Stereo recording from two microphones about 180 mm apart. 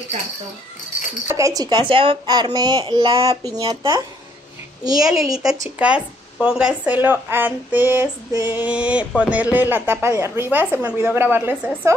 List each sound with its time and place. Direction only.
1.2 s a woman's voice: 15° right (ahead or behind)
4.9 s a woman's voice: 5° right (ahead or behind)